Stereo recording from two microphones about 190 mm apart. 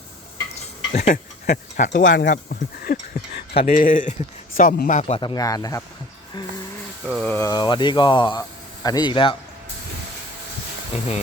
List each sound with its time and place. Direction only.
0.9 s speech: 40° left (ahead or behind)
3.5 s speech: 30° left (ahead or behind)
3.8 s speech: 45° left (ahead or behind)
5.2 s speech: 20° left (ahead or behind)
7.1 s speech: 5° left (ahead or behind)
7.5 s speech: 25° left (ahead or behind)
10.9 s speech: 35° left (ahead or behind)